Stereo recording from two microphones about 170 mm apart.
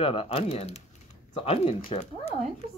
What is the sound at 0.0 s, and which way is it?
Speech, 35° left (ahead or behind).